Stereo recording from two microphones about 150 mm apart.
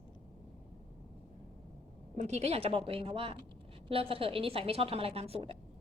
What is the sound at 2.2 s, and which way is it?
A woman's voice, 50° right (ahead or behind).